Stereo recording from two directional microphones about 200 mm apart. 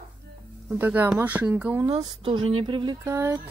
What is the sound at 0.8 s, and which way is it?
Speech, 10° right (ahead or behind).